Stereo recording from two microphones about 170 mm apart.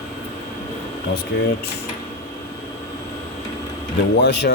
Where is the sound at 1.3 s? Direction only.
85° left.